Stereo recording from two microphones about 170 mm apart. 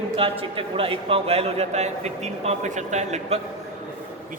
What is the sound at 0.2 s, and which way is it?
A man's voice, 35° right (ahead or behind).